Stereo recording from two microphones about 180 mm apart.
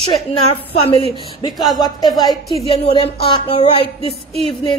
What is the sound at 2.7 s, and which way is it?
Speech, 30° left (ahead or behind).